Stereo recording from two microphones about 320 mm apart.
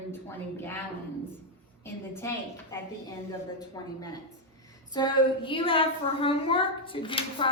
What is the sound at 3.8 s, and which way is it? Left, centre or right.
Speech, centre.